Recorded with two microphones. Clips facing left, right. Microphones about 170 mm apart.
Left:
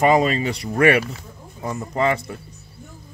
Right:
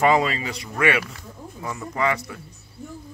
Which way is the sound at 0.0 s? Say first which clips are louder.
Left 3 dB; 20° left (ahead or behind).